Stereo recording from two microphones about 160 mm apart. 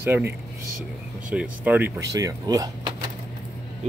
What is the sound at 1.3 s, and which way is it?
Speech, 10° right (ahead or behind).